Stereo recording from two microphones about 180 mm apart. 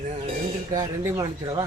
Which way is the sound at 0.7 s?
20° right (ahead or behind).